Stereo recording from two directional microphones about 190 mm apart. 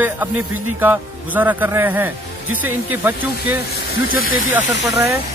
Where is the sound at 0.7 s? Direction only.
10° right (ahead or behind).